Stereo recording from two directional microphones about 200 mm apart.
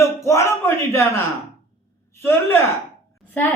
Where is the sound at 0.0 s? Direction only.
15° left (ahead or behind).